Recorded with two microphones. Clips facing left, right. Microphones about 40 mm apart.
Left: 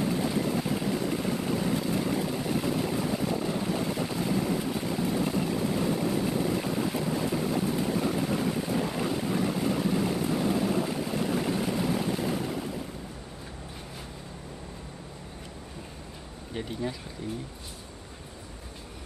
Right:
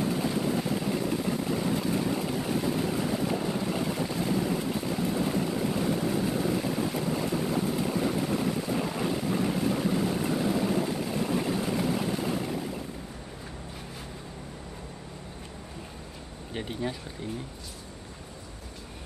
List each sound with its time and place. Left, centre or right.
16.5 s speech: right
17.2 s speech: right